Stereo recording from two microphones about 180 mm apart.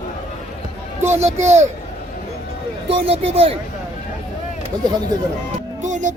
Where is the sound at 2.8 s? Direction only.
30° right (ahead or behind).